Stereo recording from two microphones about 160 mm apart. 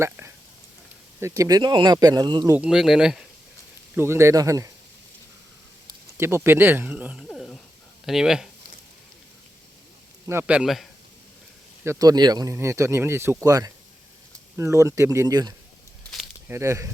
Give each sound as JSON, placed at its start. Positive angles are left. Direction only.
{"t": 0.0, "sound": "speech", "side_deg": -15}
{"t": 2.6, "sound": "speech", "side_deg": -5}
{"t": 3.9, "sound": "speech", "side_deg": -15}
{"t": 6.1, "sound": "speech", "side_deg": -15}
{"t": 7.3, "sound": "a sound", "side_deg": 5}
{"t": 8.0, "sound": "speech", "side_deg": -5}
{"t": 10.2, "sound": "speech", "side_deg": -10}
{"t": 11.9, "sound": "speech", "side_deg": -25}